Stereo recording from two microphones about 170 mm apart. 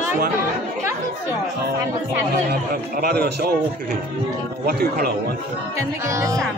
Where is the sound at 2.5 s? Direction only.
65° right (ahead or behind).